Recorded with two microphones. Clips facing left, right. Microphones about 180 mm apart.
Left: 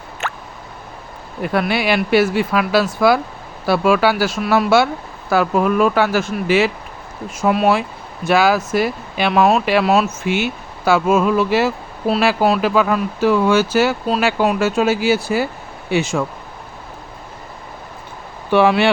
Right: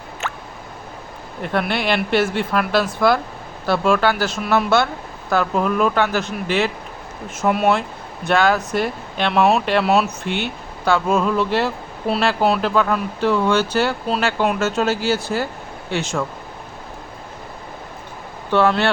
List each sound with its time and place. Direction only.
0.2 s a sound: 60° left (ahead or behind)
1.4 s speech: 5° left (ahead or behind)
18.5 s speech: 10° left (ahead or behind)